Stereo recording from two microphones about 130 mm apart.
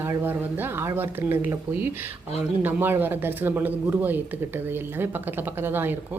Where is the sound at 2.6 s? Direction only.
15° right (ahead or behind).